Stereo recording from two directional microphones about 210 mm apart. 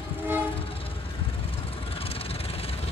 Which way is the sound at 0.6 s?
25° left (ahead or behind).